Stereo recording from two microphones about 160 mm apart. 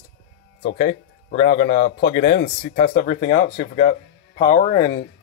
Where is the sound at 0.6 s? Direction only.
85° left.